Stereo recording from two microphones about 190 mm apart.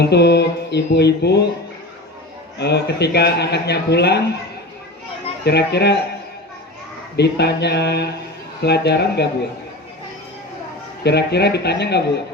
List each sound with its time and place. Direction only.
0.0 s a man's voice: 60° left (ahead or behind)
2.6 s a man's voice: 60° left (ahead or behind)
5.5 s a man's voice: 60° left (ahead or behind)
7.2 s a man's voice: 60° left (ahead or behind)
11.0 s a man's voice: 60° left (ahead or behind)